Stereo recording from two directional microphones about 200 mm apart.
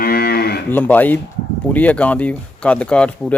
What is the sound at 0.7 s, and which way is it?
Speech, 10° left (ahead or behind).